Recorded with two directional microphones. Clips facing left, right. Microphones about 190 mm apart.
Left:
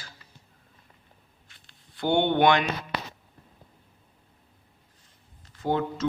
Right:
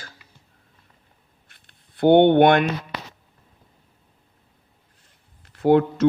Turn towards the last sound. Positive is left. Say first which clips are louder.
# right 10 dB
turn(degrees=-65)  # may be behind; listen again after turning